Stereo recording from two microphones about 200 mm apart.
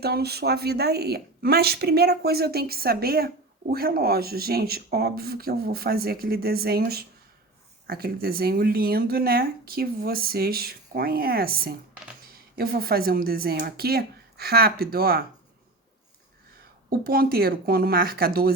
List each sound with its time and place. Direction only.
0.0 s a woman's voice: 55° right (ahead or behind)
17.0 s speech: 50° right (ahead or behind)